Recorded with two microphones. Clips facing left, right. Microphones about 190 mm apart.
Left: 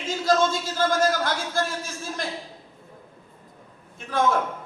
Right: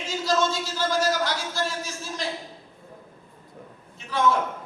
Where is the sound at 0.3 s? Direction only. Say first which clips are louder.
Left 3 dB; 50° left (ahead or behind).